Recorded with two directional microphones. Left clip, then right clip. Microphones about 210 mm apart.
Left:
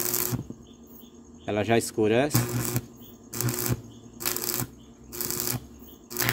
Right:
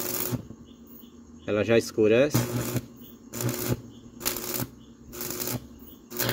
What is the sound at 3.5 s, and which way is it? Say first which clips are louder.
Shuffling cards: right 1 dB; 20° left (ahead or behind).